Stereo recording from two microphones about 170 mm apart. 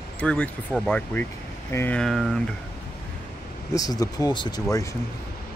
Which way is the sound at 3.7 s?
20° left (ahead or behind).